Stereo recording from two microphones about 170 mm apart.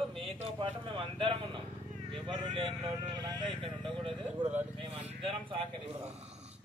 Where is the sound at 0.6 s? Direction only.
30° right (ahead or behind).